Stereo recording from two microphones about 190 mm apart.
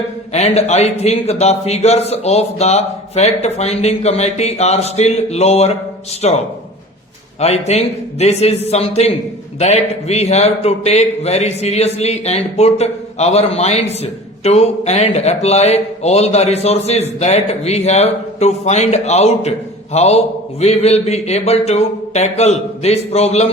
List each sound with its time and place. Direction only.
0.3 s a man's voice: 35° left (ahead or behind)